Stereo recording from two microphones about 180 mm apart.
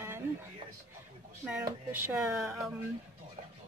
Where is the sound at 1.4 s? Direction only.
5° right (ahead or behind).